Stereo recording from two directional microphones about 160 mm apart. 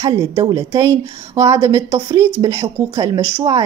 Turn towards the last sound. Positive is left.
turn(degrees=-20)  # may be behind; listen again after turning